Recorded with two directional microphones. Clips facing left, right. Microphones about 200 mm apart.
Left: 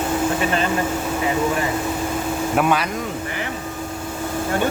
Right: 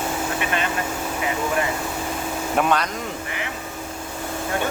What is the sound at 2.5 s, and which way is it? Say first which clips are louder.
Speech: left 1 dB; 5° left (ahead or behind).